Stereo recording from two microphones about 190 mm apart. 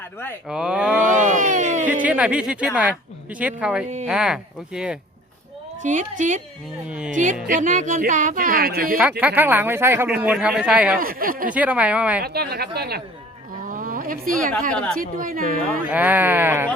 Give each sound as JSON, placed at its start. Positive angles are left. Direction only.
{"t": 0.4, "sound": "speech", "side_deg": -5}
{"t": 1.0, "sound": "a sound", "side_deg": -40}
{"t": 1.9, "sound": "speech", "side_deg": -10}
{"t": 5.8, "sound": "a woman's voice", "side_deg": -40}
{"t": 9.0, "sound": "speech", "side_deg": -10}
{"t": 10.9, "sound": "speech", "side_deg": -50}
{"t": 11.5, "sound": "speech", "side_deg": -10}
{"t": 12.2, "sound": "a woman's voice", "side_deg": -55}
{"t": 13.7, "sound": "a sound", "side_deg": -45}
{"t": 14.9, "sound": "speech", "side_deg": -45}
{"t": 15.9, "sound": "speech", "side_deg": -10}